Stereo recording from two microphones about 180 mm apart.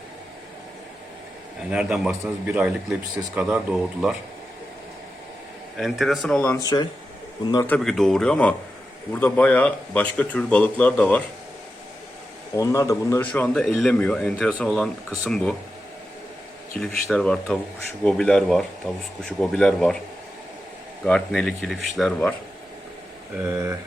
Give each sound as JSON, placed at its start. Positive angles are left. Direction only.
{"t": 1.7, "sound": "a man's voice", "side_deg": -5}
{"t": 5.7, "sound": "a man's voice", "side_deg": 0}
{"t": 6.6, "sound": "a man's voice", "side_deg": 20}
{"t": 7.7, "sound": "a man's voice", "side_deg": 0}
{"t": 12.5, "sound": "a man's voice", "side_deg": 20}
{"t": 16.8, "sound": "a man's voice", "side_deg": 5}
{"t": 21.0, "sound": "a man's voice", "side_deg": 5}